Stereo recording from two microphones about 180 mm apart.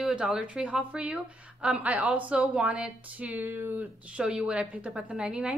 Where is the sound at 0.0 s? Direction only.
5° right (ahead or behind).